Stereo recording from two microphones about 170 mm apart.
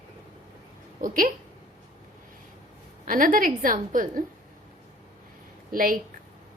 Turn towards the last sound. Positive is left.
turn(degrees=-55)  # may be behind; listen again after turning